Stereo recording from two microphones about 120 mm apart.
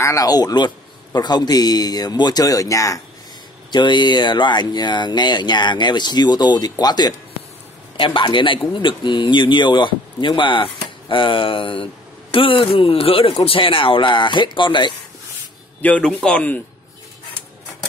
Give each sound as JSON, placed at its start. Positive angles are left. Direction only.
{"t": 0.0, "sound": "speech", "side_deg": 30}
{"t": 3.7, "sound": "speech", "side_deg": 40}
{"t": 8.0, "sound": "speech", "side_deg": 45}
{"t": 15.8, "sound": "a man's voice", "side_deg": 15}